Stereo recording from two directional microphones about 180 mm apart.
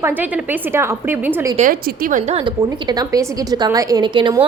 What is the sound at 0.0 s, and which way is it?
A woman's voice, 10° right (ahead or behind).